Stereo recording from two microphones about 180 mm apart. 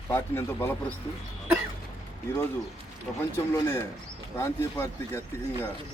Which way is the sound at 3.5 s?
15° left (ahead or behind).